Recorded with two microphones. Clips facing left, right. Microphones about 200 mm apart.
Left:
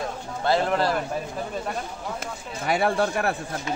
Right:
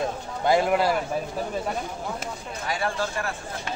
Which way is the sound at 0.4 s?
15° right (ahead or behind).